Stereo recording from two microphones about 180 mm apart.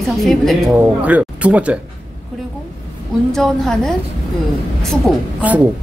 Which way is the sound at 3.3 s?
Centre (ahead or behind).